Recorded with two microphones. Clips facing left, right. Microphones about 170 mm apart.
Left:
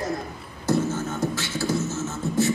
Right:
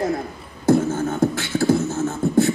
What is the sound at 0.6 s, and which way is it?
Beatboxing, 55° right (ahead or behind).